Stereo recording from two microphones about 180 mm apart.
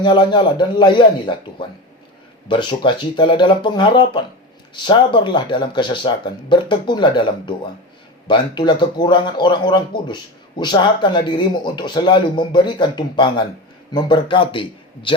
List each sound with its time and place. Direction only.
0.0 s speech: 25° left (ahead or behind)